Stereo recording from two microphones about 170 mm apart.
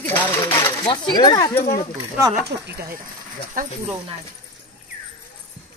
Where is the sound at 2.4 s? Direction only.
70° right (ahead or behind).